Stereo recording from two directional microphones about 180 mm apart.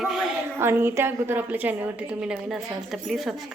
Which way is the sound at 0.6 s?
15° right (ahead or behind).